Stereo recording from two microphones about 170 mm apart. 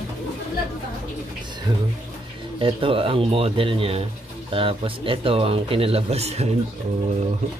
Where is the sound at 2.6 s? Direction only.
30° right (ahead or behind).